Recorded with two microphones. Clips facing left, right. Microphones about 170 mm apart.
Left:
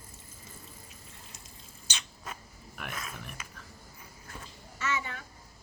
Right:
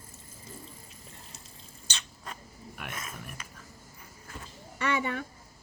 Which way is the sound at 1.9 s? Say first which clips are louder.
Even; 10° left (ahead or behind).